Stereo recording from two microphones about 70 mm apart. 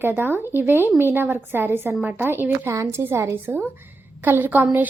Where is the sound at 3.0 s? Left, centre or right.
Right.